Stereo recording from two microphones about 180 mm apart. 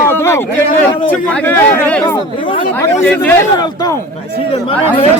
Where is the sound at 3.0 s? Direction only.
10° left (ahead or behind).